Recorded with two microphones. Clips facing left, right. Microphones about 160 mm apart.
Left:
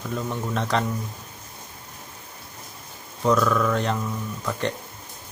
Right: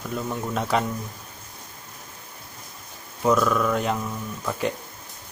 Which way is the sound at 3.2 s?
5° right (ahead or behind).